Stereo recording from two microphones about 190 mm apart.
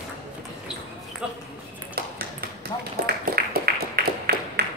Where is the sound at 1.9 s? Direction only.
50° right (ahead or behind).